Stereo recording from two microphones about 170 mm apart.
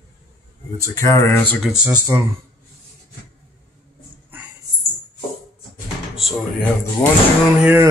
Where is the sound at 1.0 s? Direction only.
15° left (ahead or behind).